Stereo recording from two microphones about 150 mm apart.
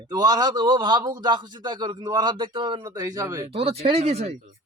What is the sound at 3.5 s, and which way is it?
Speech, 40° right (ahead or behind).